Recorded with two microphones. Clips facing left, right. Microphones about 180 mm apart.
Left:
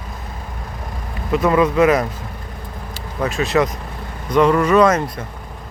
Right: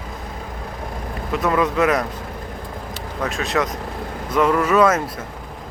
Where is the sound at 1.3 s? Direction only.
Centre (ahead or behind).